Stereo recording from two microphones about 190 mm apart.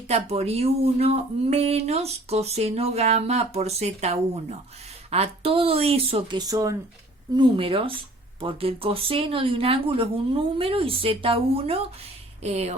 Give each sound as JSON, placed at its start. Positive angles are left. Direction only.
{"t": 0.1, "sound": "speech", "side_deg": -35}